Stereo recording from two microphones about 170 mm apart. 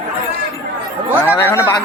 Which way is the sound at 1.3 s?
15° left (ahead or behind).